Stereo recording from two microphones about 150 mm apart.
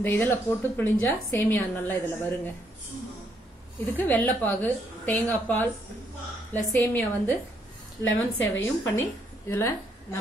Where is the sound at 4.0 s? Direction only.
15° left (ahead or behind).